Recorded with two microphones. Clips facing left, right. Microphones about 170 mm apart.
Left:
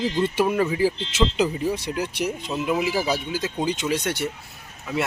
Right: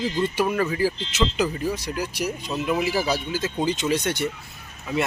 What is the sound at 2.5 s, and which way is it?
Speech, 10° left (ahead or behind).